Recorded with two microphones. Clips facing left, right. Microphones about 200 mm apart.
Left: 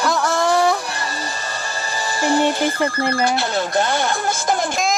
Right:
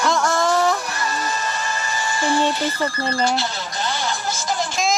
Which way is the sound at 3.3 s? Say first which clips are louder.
Left 7 dB; 55° left (ahead or behind).